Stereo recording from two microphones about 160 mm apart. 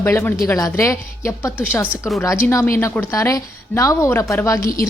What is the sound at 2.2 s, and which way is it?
A woman's voice, 20° left (ahead or behind).